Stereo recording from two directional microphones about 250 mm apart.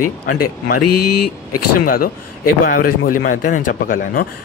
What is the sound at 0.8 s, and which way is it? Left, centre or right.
Speech, left.